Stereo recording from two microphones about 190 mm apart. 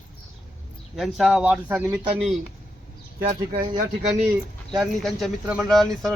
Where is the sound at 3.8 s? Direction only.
35° right (ahead or behind).